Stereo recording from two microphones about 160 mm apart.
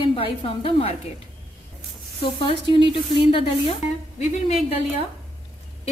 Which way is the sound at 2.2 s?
35° left (ahead or behind).